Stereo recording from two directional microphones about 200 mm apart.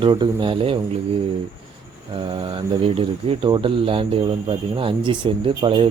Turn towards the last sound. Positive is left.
turn(degrees=-25)  # may be behind; listen again after turning